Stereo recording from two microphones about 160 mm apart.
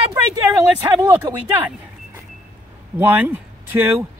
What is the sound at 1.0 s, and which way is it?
Speech, 15° right (ahead or behind).